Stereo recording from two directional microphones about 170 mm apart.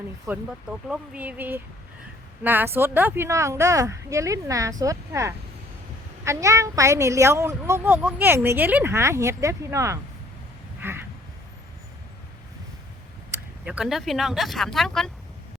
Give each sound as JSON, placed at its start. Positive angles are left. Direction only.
{"t": 0.3, "sound": "a woman's voice", "side_deg": -5}
{"t": 10.8, "sound": "a sound", "side_deg": -15}
{"t": 13.7, "sound": "speech", "side_deg": -5}